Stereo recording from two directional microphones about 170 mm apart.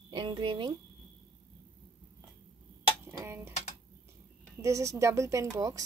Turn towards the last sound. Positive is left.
turn(degrees=-20)  # may be behind; listen again after turning